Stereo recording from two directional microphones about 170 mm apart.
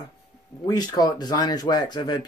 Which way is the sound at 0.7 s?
25° left (ahead or behind).